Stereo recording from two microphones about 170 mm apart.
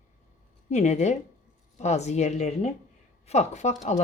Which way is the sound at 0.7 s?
45° left (ahead or behind).